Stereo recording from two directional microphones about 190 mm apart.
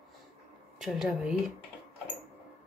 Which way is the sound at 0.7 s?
Centre (ahead or behind).